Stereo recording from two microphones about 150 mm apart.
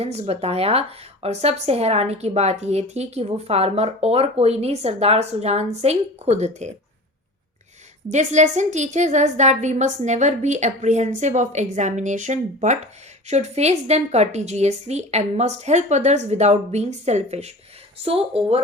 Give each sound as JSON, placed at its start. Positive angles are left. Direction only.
{"t": 0.0, "sound": "a woman's voice", "side_deg": -45}
{"t": 8.1, "sound": "a woman's voice", "side_deg": -50}